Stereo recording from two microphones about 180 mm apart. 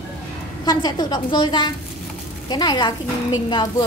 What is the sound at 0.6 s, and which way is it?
A woman's voice, 25° left (ahead or behind).